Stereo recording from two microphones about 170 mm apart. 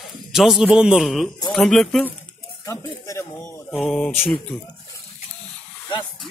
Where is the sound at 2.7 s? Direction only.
20° left (ahead or behind).